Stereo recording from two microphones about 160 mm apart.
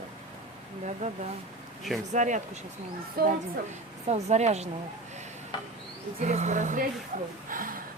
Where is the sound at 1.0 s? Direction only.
50° right (ahead or behind).